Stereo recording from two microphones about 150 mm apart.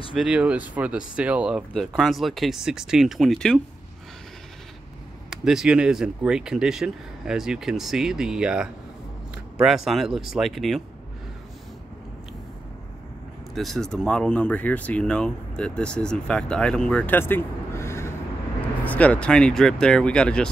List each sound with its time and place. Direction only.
0.1 s speech: 5° right (ahead or behind)
5.3 s speech: 5° right (ahead or behind)
13.6 s speech: centre (ahead or behind)